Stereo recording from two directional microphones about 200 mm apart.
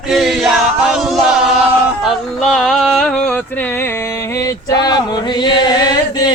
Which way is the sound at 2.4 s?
Centre (ahead or behind).